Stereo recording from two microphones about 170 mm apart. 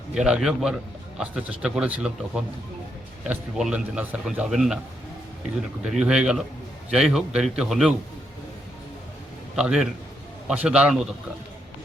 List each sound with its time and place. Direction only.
0.1 s a man's voice: 5° right (ahead or behind)
5.8 s a man's voice: 5° right (ahead or behind)
9.6 s a man's voice: 5° right (ahead or behind)